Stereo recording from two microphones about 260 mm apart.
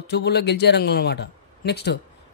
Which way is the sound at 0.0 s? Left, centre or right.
Left.